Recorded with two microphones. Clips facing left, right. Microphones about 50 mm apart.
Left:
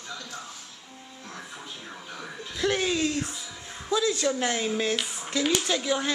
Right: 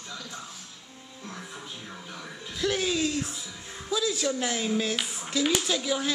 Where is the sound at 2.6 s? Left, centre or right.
Centre.